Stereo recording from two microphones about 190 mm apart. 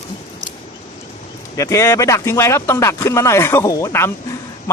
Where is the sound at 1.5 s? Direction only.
15° left (ahead or behind).